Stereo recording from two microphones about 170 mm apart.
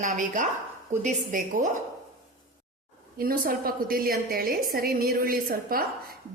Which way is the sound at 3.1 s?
60° right (ahead or behind).